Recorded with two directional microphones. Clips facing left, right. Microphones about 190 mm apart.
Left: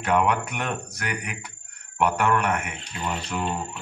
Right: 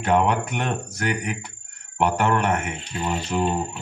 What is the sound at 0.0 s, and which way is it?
Speech, 25° right (ahead or behind).